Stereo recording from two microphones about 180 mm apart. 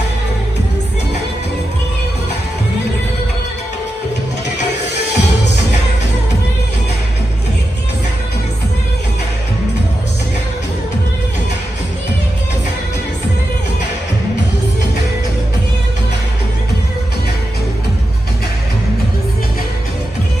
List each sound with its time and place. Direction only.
4.8 s music: 70° left (ahead or behind)